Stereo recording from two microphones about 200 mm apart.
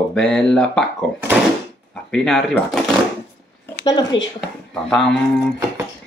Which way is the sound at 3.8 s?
20° left (ahead or behind).